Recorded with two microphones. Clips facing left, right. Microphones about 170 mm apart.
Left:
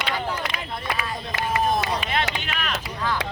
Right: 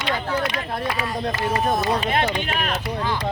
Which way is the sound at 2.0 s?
40° right (ahead or behind).